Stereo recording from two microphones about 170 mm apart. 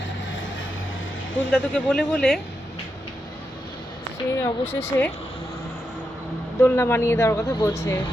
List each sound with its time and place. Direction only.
1.5 s speech: 5° left (ahead or behind)
4.4 s speech: 15° left (ahead or behind)
6.6 s speech: 15° left (ahead or behind)